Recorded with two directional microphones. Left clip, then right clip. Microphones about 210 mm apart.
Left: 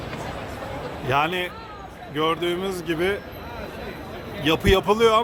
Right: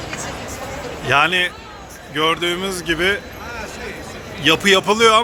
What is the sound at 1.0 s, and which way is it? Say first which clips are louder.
Speech: right 7 dB; centre (ahead or behind).